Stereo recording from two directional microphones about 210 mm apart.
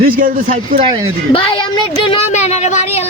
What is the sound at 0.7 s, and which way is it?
Speech, 25° right (ahead or behind).